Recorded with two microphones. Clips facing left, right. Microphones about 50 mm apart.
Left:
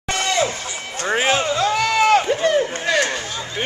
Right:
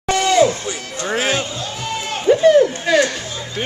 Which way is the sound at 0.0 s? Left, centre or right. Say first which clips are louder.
Right 6 dB; centre.